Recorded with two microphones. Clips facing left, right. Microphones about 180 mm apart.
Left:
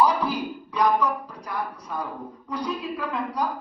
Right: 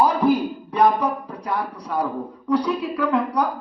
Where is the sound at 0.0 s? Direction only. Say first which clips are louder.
Right 5 dB; 50° right (ahead or behind); by 2.0 s 65° right (ahead or behind).